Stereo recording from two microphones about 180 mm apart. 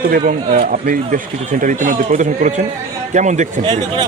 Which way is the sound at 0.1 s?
50° right (ahead or behind).